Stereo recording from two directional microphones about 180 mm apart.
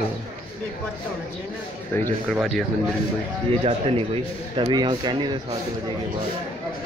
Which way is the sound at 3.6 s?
35° right (ahead or behind).